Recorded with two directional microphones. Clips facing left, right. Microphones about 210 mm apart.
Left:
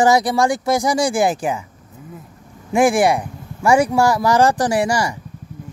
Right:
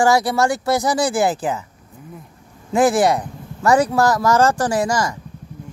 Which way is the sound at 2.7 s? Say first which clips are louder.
Left 1 dB; 10° left (ahead or behind).